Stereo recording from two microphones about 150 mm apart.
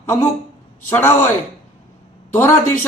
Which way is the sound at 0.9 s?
15° left (ahead or behind).